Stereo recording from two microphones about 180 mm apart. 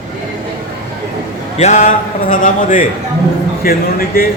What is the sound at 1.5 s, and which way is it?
A man's voice, 40° left (ahead or behind).